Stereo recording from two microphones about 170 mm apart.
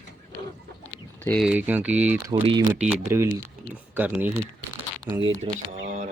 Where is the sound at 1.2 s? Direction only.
5° left (ahead or behind).